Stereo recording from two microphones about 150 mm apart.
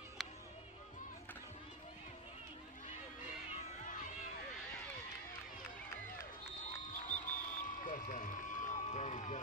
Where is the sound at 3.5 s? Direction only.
55° left (ahead or behind).